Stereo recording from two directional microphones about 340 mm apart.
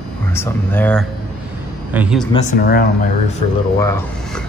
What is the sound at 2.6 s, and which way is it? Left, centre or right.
Speech, left.